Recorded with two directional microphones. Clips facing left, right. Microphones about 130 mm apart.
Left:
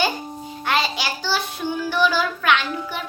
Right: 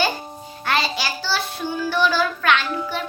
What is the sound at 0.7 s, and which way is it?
Child singing, 15° left (ahead or behind).